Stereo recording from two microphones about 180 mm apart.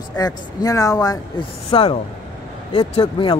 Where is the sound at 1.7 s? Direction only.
30° left (ahead or behind).